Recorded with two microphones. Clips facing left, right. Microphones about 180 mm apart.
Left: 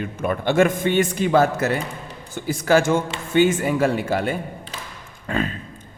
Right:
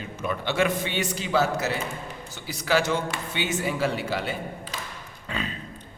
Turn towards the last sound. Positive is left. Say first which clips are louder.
# left 8 dB
turn(degrees=50)  # may be behind; listen again after turning